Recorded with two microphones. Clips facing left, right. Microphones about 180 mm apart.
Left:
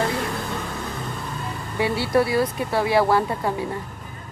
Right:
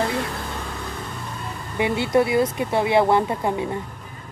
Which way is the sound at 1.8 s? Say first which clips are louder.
Right 1 dB; 20° right (ahead or behind).